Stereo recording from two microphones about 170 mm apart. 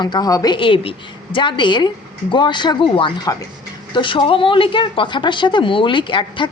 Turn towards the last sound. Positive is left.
turn(degrees=30)  # may be behind; listen again after turning